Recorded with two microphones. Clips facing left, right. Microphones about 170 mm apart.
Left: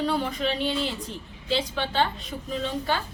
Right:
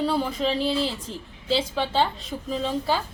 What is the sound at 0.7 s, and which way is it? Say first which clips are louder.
Speech: right 2 dB; 30° right (ahead or behind).